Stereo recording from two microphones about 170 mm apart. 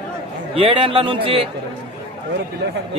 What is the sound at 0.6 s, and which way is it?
Speech, 30° right (ahead or behind).